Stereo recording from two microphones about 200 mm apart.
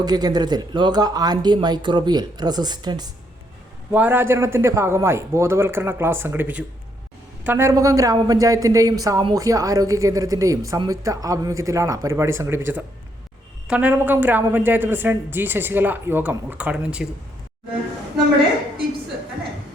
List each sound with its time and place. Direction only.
0.0 s speech: 20° right (ahead or behind)
3.9 s a man's voice: 10° right (ahead or behind)